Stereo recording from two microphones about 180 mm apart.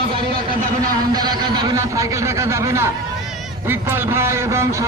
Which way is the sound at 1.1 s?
25° right (ahead or behind).